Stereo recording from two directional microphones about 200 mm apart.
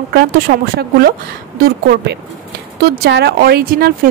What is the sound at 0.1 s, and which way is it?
Speech, 50° right (ahead or behind).